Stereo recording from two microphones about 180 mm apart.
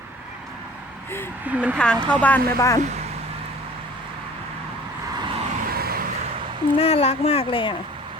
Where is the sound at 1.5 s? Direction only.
10° right (ahead or behind).